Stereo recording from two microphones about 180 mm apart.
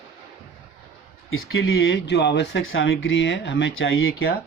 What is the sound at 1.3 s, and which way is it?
Speech, 90° left.